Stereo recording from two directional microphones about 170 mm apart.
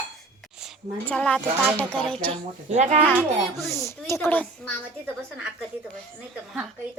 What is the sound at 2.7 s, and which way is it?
Speech, 40° right (ahead or behind).